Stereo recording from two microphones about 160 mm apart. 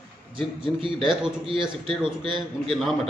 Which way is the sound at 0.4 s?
30° right (ahead or behind).